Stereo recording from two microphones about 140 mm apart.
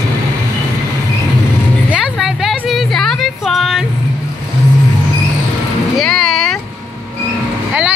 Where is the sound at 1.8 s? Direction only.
5° right (ahead or behind).